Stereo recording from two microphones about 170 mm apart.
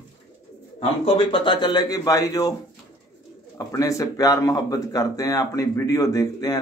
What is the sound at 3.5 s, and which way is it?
Speech, 20° left (ahead or behind).